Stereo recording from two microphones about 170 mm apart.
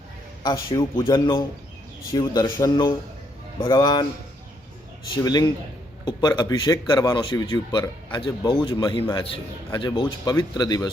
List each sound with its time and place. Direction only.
0.4 s speech: 20° left (ahead or behind)
5.1 s speech: 25° left (ahead or behind)